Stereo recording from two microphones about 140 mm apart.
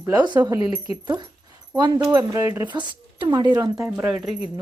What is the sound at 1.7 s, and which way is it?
Speech, 30° right (ahead or behind).